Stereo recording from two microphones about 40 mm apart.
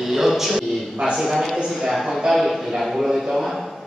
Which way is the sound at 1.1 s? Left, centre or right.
Centre.